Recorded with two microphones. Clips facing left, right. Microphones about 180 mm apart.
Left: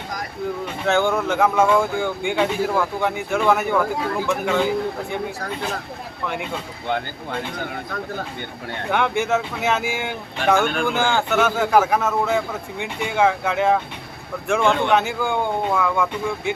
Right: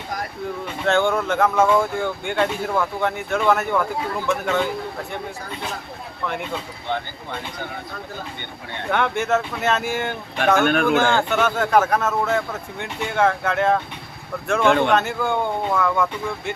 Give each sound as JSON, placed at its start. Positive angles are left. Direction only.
{"t": 0.9, "sound": "speech", "side_deg": 10}
{"t": 8.9, "sound": "speech", "side_deg": 10}
{"t": 10.7, "sound": "speech", "side_deg": -65}
{"t": 11.0, "sound": "speech", "side_deg": 5}